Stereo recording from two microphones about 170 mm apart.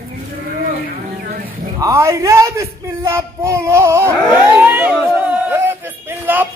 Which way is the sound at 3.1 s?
15° right (ahead or behind).